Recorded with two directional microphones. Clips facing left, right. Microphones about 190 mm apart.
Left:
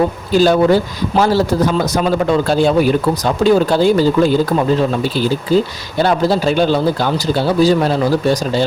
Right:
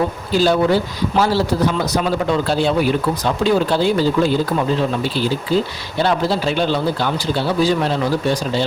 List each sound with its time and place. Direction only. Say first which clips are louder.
0.3 s speech: left 4 dB; 45° left (ahead or behind)